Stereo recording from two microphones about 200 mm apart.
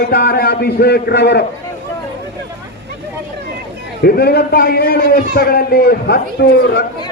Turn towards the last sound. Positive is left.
turn(degrees=55)  # may be behind; listen again after turning